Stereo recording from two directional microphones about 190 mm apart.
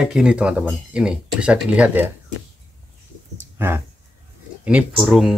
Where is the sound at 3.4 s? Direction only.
10° right (ahead or behind).